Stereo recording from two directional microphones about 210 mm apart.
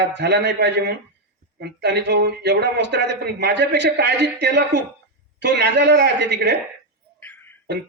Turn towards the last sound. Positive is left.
turn(degrees=10)  # may be behind; listen again after turning